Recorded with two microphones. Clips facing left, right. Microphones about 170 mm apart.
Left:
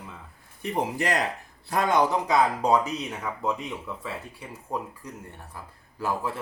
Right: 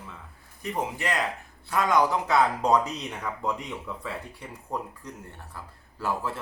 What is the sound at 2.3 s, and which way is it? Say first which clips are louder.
Speech: even; 10° left (ahead or behind).